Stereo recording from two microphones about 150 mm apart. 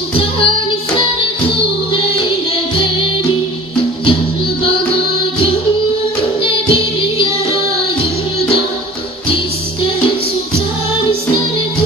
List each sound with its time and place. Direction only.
0.1 s music: 40° left (ahead or behind)
6.4 s music: 35° left (ahead or behind)